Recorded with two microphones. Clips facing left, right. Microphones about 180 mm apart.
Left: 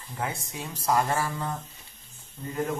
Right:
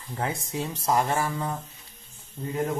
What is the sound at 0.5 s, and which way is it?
Speech, 20° right (ahead or behind).